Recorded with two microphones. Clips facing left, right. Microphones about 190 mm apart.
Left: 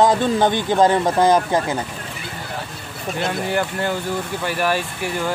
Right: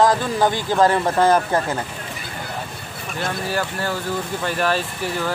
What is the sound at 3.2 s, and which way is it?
Speech, 20° left (ahead or behind).